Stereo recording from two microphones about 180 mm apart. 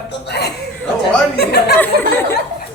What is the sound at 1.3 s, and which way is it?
Speech, 65° left (ahead or behind).